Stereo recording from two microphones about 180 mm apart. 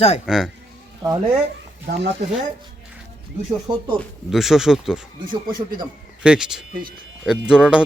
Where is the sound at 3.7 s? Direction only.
25° right (ahead or behind).